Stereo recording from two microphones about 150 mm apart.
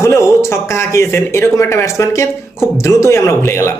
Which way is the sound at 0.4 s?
15° left (ahead or behind).